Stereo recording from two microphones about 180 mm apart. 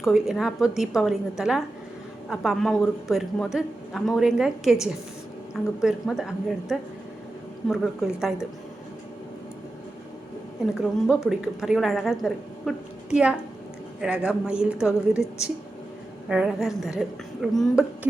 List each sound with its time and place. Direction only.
0.0 s a man's voice: centre (ahead or behind)
11.0 s a man's voice: centre (ahead or behind)